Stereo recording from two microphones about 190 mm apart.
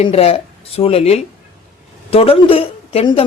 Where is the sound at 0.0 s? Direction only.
30° left (ahead or behind).